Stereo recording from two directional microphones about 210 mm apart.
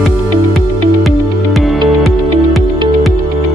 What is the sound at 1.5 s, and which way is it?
Music, centre (ahead or behind).